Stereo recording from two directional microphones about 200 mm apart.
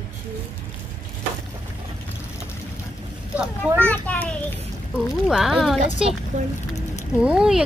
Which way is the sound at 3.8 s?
5° left (ahead or behind).